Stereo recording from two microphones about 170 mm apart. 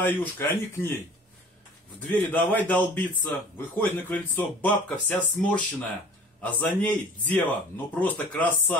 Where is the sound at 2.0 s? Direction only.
10° left (ahead or behind).